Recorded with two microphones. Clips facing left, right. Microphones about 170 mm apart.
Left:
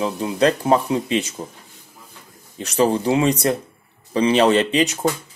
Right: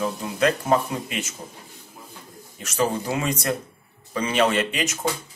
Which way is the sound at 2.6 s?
30° left (ahead or behind).